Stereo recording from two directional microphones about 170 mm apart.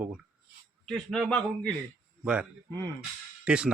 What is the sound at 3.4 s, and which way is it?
Speech, 5° right (ahead or behind).